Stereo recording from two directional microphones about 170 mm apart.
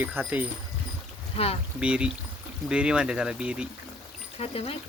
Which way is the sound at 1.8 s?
5° right (ahead or behind).